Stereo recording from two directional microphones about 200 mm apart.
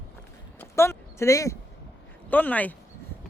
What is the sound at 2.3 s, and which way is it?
Speech, 10° left (ahead or behind).